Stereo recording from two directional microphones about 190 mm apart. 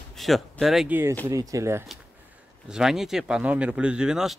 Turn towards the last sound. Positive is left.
turn(degrees=-5)  # may be behind; listen again after turning